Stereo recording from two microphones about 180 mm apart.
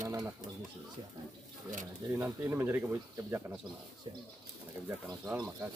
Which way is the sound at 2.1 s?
15° right (ahead or behind).